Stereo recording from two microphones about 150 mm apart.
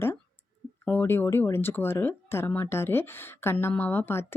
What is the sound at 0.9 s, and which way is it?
Speech, 15° left (ahead or behind).